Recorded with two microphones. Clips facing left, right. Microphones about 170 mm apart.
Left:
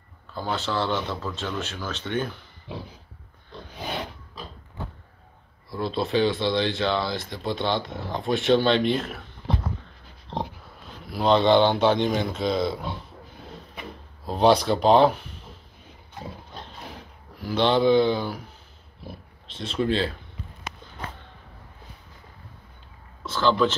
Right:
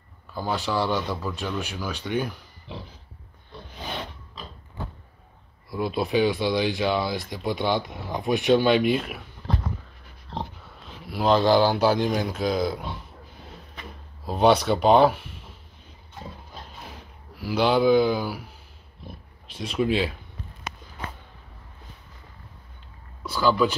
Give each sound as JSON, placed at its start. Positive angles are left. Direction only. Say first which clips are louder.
{"t": 0.3, "sound": "speech", "louder": "right 1 dB", "side_deg": -10}
{"t": 5.7, "sound": "speech", "louder": "right 1 dB", "side_deg": -10}
{"t": 9.4, "sound": "a sound", "louder": "left 1 dB", "side_deg": 10}
{"t": 10.3, "sound": "dog", "louder": "left 3 dB", "side_deg": 20}
{"t": 10.9, "sound": "speech", "louder": "even", "side_deg": -5}
{"t": 14.2, "sound": "speech", "louder": "even", "side_deg": -5}
{"t": 17.4, "sound": "speech", "louder": "even", "side_deg": -5}
{"t": 19.5, "sound": "speech", "louder": "right 1 dB", "side_deg": -10}
{"t": 23.2, "sound": "speech", "louder": "even", "side_deg": -10}